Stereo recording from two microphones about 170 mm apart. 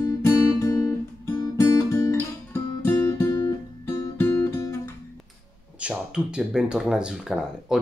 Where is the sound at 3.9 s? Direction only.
15° left (ahead or behind).